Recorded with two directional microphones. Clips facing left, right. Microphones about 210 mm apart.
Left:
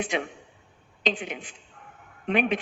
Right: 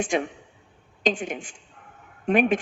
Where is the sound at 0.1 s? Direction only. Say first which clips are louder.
Right 4 dB; 45° right (ahead or behind).